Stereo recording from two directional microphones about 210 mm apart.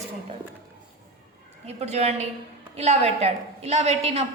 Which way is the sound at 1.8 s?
30° right (ahead or behind).